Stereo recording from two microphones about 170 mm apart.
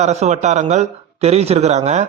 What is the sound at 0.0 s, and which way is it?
A man's voice, 40° right (ahead or behind).